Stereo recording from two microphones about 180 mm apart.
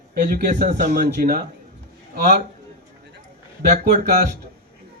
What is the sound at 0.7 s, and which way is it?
Speech, 40° right (ahead or behind).